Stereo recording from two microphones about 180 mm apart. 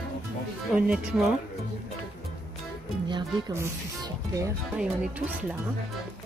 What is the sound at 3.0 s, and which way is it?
Speech, 25° right (ahead or behind).